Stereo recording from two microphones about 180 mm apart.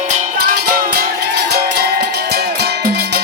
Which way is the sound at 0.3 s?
55° right (ahead or behind).